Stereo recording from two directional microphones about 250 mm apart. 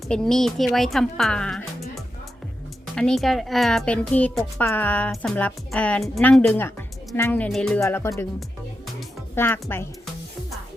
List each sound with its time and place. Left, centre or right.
0.1 s speech: centre
2.9 s speech: centre